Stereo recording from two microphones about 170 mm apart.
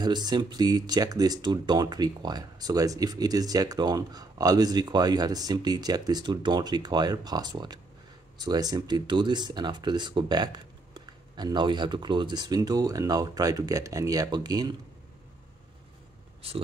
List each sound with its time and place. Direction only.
0.0 s speech: 25° right (ahead or behind)